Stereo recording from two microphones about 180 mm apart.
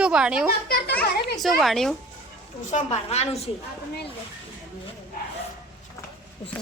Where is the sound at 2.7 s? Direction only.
40° left (ahead or behind).